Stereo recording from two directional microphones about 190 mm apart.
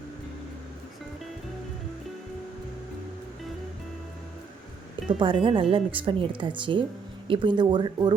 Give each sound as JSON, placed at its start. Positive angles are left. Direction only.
{"t": 5.2, "sound": "speech", "side_deg": -25}